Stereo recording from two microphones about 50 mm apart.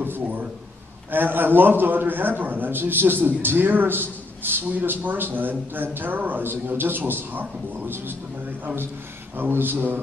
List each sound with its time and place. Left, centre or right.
0.0 s a sound: right
1.1 s a man's voice: right
9.4 s a man's voice: right